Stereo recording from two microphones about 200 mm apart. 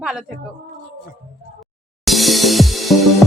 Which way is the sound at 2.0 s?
Centre (ahead or behind).